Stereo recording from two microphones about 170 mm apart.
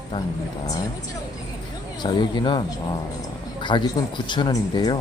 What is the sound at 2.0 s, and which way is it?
Speech, 25° left (ahead or behind).